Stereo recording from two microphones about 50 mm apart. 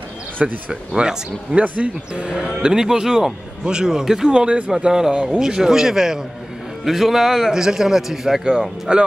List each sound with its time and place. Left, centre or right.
0.7 s speech: centre
4.3 s speech: right
4.6 s speech: centre
8.9 s speech: centre